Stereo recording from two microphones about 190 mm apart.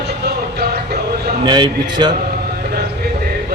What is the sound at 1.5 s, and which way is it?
Speech, 20° right (ahead or behind).